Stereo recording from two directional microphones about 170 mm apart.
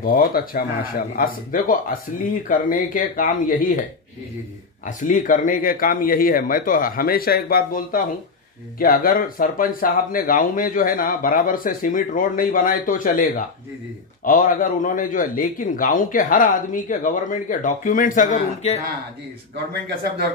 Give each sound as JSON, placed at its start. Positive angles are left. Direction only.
{"t": 0.0, "sound": "speech", "side_deg": 60}
{"t": 4.8, "sound": "speech", "side_deg": 50}
{"t": 19.7, "sound": "speech", "side_deg": -70}